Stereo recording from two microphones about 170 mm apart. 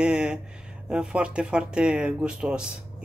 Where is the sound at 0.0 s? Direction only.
5° right (ahead or behind).